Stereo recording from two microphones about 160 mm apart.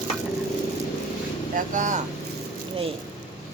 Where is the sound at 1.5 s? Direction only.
55° right (ahead or behind).